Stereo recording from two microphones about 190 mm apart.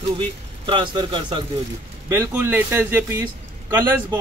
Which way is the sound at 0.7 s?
25° right (ahead or behind).